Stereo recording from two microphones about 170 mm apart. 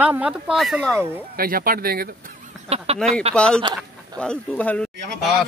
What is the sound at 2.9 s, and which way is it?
Speech, 5° left (ahead or behind).